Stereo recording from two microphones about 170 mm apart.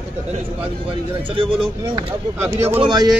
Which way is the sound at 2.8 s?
25° right (ahead or behind).